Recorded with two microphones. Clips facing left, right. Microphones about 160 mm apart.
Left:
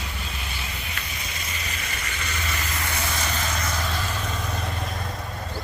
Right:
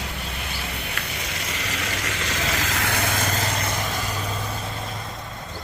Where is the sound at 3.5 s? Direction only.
25° right (ahead or behind).